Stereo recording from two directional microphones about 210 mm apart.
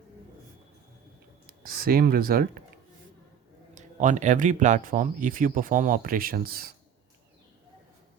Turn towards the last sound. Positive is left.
turn(degrees=-45)  # may be behind; listen again after turning